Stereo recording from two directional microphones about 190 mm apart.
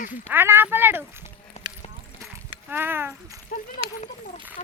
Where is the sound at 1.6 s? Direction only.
35° left (ahead or behind).